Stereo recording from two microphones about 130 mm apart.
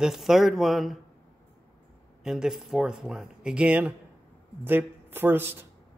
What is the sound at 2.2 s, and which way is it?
Speech, 5° right (ahead or behind).